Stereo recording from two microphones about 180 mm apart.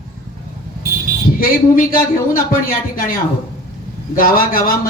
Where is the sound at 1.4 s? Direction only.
50° left (ahead or behind).